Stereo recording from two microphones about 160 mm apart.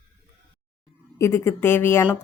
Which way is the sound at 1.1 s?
15° left (ahead or behind).